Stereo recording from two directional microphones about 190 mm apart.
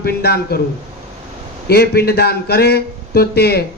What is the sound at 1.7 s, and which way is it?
Speech, 55° left (ahead or behind).